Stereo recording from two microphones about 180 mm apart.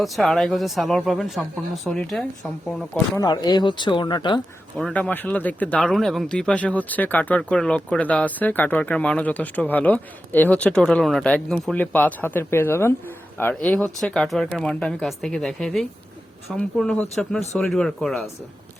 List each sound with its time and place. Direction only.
0.0 s speech: centre (ahead or behind)
3.2 s speech: 20° left (ahead or behind)
4.8 s speech: 5° left (ahead or behind)